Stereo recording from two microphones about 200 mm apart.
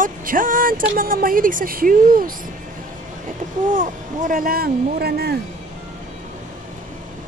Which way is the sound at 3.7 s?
40° right (ahead or behind).